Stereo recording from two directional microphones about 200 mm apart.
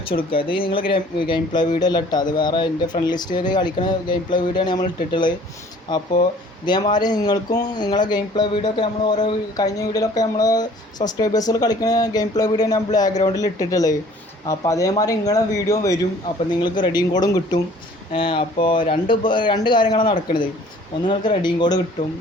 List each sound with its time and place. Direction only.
0.1 s speech: 25° left (ahead or behind)
6.7 s speech: 20° left (ahead or behind)